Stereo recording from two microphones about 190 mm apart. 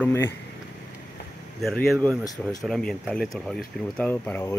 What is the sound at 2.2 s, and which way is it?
Speech, 20° left (ahead or behind).